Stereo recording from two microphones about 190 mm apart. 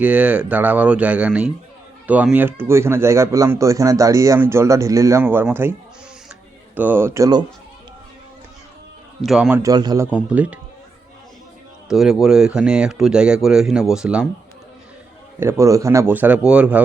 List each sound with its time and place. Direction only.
0.0 s a man's voice: 5° right (ahead or behind)
6.7 s a man's voice: 10° right (ahead or behind)
9.2 s speech: 5° right (ahead or behind)
9.6 s a man's voice: 20° right (ahead or behind)
10.1 s a man's voice: 5° right (ahead or behind)
11.9 s speech: centre (ahead or behind)
15.4 s a man's voice: 15° right (ahead or behind)